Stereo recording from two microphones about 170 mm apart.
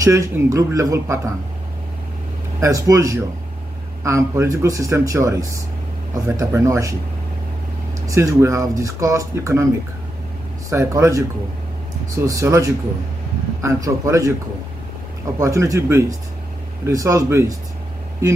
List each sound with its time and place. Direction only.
0.0 s speech: 20° right (ahead or behind)
2.6 s speech: 20° right (ahead or behind)
8.1 s speech: 15° right (ahead or behind)
10.7 s speech: 15° right (ahead or behind)
12.3 s speech: 20° right (ahead or behind)
15.3 s speech: 20° right (ahead or behind)